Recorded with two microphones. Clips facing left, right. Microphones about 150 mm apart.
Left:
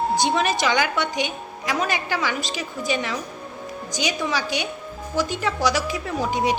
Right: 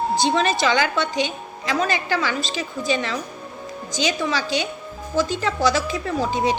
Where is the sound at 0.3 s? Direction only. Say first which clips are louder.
Right 2 dB; 15° left (ahead or behind).